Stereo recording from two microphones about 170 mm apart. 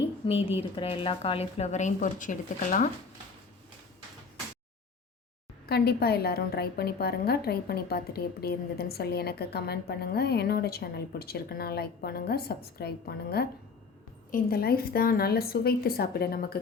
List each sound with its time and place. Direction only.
0.3 s speech: 35° left (ahead or behind)
5.6 s a woman's voice: 70° left (ahead or behind)
14.3 s a woman's voice: 60° left (ahead or behind)